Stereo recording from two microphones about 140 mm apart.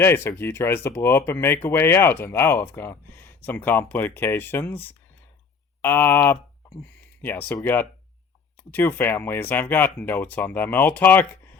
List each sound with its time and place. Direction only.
0.0 s speech: 15° left (ahead or behind)